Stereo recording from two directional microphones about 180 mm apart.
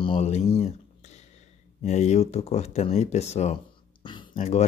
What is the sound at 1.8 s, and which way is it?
Speech, 40° left (ahead or behind).